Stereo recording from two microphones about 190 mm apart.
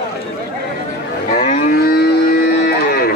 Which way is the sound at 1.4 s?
45° left (ahead or behind).